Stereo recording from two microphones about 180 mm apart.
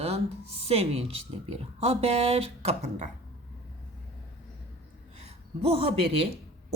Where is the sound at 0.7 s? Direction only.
35° right (ahead or behind).